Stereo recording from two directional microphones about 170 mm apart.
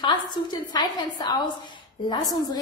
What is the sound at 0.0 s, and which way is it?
A woman's voice, 25° left (ahead or behind).